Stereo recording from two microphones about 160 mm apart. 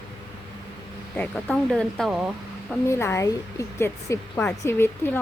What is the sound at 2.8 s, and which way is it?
A woman's voice, 15° left (ahead or behind).